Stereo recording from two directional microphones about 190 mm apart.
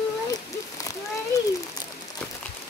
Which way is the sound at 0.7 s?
15° left (ahead or behind).